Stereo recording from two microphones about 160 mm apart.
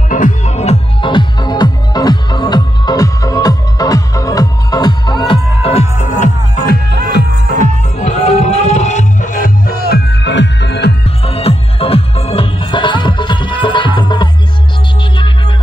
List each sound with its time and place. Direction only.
0.1 s music: 50° left (ahead or behind)
1.1 s music: 25° left (ahead or behind); by 6.7 s 50° left (ahead or behind)
6.7 s music: 80° left
7.6 s music: 45° left (ahead or behind); by 11.0 s 90° left
11.1 s music: 40° left (ahead or behind)